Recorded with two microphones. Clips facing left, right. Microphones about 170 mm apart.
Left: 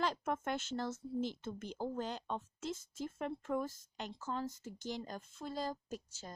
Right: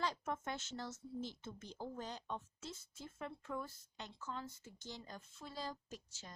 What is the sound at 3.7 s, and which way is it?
Speech, 90° left.